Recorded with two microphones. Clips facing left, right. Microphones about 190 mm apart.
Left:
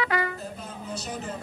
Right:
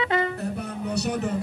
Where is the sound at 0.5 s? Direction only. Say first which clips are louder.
Right 8 dB; 70° right (ahead or behind).